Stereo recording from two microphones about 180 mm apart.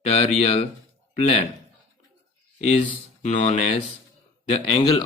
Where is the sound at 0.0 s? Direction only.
35° left (ahead or behind).